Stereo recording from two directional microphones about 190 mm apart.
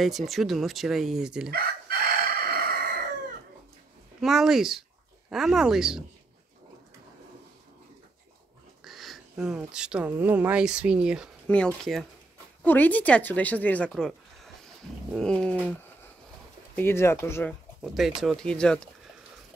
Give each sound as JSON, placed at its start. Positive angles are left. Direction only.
{"t": 0.0, "sound": "speech", "side_deg": 0}
{"t": 1.5, "sound": "chicken", "side_deg": -55}
{"t": 4.2, "sound": "speech", "side_deg": 0}
{"t": 8.8, "sound": "speech", "side_deg": 0}
{"t": 17.8, "sound": "speech", "side_deg": 0}